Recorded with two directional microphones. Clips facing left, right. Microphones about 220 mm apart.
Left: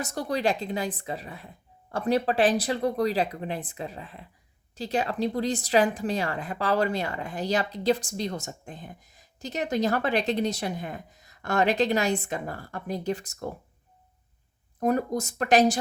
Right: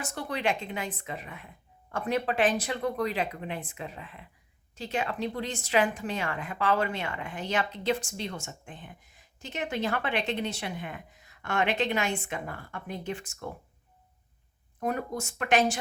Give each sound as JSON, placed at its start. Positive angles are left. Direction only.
{"t": 0.0, "sound": "a woman's voice", "side_deg": 40}
{"t": 14.8, "sound": "a woman's voice", "side_deg": 40}